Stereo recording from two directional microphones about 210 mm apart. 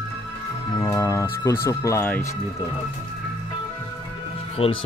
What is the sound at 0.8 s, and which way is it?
Speech, 15° left (ahead or behind).